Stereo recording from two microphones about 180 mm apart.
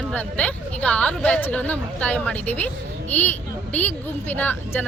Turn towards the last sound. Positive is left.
turn(degrees=10)  # may be behind; listen again after turning